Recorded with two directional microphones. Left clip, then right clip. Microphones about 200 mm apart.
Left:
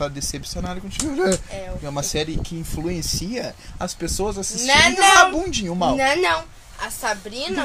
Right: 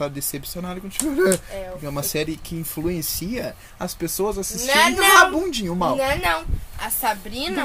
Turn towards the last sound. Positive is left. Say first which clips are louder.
# even
turn(degrees=0)  # may be behind; listen again after turning